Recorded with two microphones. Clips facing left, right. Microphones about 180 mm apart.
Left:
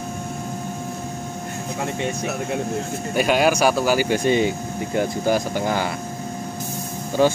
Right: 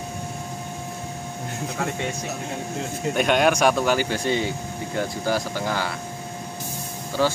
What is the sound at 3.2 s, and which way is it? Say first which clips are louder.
Speech: left 2 dB; 5° left (ahead or behind).